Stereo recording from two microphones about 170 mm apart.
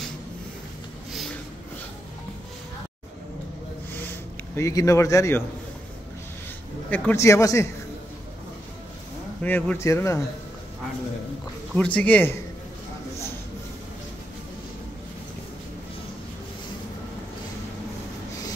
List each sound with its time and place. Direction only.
3.9 s a sound: 10° left (ahead or behind)
6.9 s speech: 15° left (ahead or behind)
9.4 s speech: 10° left (ahead or behind)
11.7 s speech: 10° left (ahead or behind)